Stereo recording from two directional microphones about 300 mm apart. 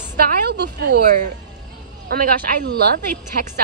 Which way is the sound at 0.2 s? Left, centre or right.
Right.